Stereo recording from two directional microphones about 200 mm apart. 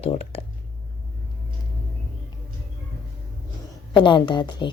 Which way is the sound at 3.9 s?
25° left (ahead or behind).